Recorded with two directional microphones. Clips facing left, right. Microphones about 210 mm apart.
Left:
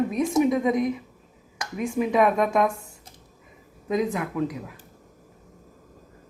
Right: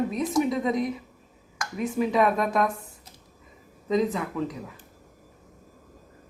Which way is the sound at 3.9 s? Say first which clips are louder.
Even; 10° left (ahead or behind).